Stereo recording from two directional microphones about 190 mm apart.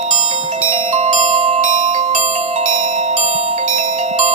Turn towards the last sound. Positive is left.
turn(degrees=-40)  # may be behind; listen again after turning